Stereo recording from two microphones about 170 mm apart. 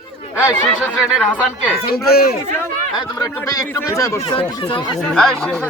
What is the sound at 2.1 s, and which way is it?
Speech, 65° left (ahead or behind).